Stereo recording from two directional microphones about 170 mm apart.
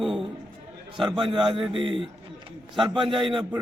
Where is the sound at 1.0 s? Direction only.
30° right (ahead or behind).